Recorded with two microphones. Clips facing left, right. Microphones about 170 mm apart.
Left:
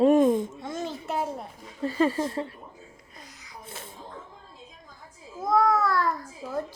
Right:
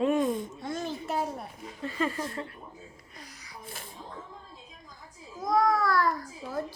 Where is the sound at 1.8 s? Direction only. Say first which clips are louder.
Left 7 dB; 35° left (ahead or behind).